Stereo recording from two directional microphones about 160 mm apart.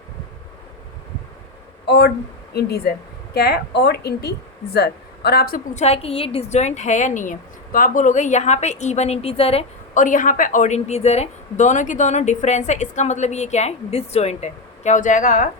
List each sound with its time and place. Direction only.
1.9 s speech: 90° left
3.3 s a woman's voice: 90° left; by 5.6 s 70° left (ahead or behind)
5.7 s a woman's voice: 40° left (ahead or behind)
10.0 s a woman's voice: 55° left (ahead or behind)